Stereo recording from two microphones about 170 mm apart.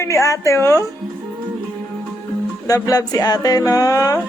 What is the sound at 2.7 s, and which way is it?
Speech, 20° left (ahead or behind).